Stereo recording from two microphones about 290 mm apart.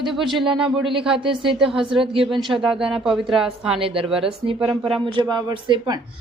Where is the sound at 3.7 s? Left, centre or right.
Centre.